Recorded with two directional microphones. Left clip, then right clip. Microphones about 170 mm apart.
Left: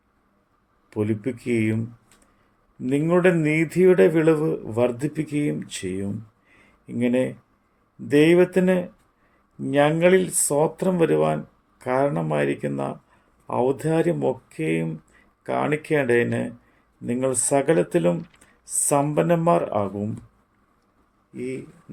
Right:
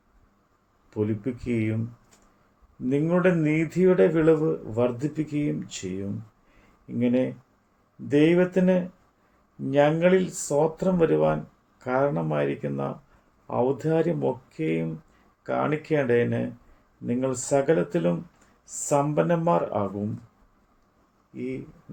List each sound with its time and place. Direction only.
0.9 s a man's voice: 50° left (ahead or behind)
2.9 s a man's voice: 50° left (ahead or behind)
21.3 s a man's voice: 55° left (ahead or behind)